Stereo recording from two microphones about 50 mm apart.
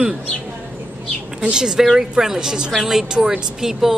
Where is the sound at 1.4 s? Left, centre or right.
Centre.